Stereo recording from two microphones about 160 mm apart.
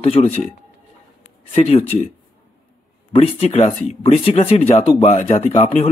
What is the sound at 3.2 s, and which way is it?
Speech, 40° left (ahead or behind).